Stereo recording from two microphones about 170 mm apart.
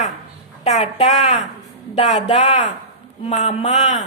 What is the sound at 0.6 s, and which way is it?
A woman's voice, 40° left (ahead or behind).